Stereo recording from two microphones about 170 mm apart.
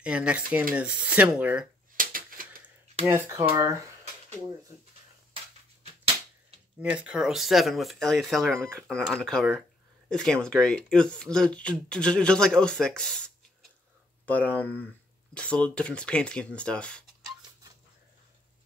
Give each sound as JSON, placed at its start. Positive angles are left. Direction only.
{"t": 0.0, "sound": "speech", "side_deg": -5}
{"t": 2.0, "sound": "a sound", "side_deg": -55}
{"t": 3.1, "sound": "speech", "side_deg": -15}
{"t": 6.8, "sound": "speech", "side_deg": -5}
{"t": 14.6, "sound": "speech", "side_deg": 10}